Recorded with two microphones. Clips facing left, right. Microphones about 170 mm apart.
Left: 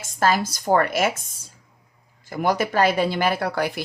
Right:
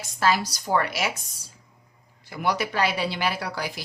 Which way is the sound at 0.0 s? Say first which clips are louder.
Left 3 dB; 50° left (ahead or behind).